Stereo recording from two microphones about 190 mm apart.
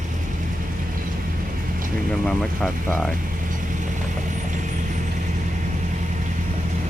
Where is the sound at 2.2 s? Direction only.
5° left (ahead or behind).